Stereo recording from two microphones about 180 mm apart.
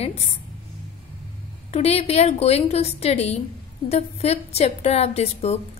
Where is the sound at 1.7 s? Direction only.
35° left (ahead or behind).